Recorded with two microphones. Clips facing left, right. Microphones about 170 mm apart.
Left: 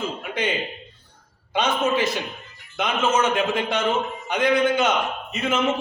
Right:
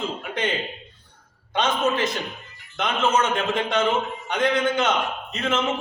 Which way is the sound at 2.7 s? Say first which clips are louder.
Even; 5° left (ahead or behind).